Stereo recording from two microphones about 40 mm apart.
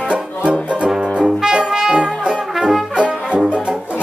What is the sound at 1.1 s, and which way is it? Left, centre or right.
Brass instrument, centre.